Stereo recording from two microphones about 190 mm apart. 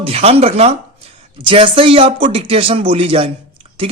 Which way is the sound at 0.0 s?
30° right (ahead or behind).